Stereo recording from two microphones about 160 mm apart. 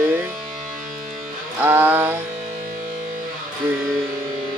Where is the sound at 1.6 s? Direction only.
10° right (ahead or behind).